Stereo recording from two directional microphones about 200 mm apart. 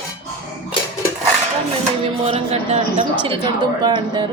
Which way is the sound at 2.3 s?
30° right (ahead or behind).